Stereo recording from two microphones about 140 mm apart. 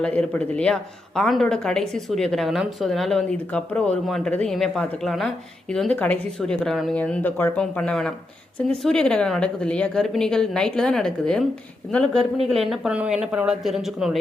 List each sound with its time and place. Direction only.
0.0 s speech: 10° left (ahead or behind)